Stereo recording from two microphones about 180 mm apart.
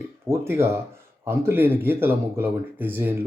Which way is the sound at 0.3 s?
15° right (ahead or behind).